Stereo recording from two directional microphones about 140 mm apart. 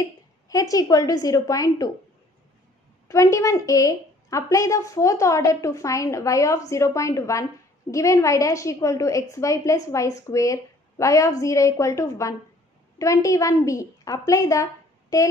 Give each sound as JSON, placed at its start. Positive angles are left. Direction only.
{"t": 0.0, "sound": "a woman's voice", "side_deg": 25}
{"t": 3.1, "sound": "a woman's voice", "side_deg": 20}